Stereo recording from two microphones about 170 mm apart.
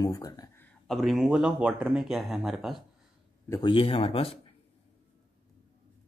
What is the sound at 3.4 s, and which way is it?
Speech, 25° left (ahead or behind).